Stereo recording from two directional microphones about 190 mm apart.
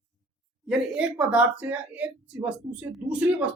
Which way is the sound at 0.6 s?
5° right (ahead or behind).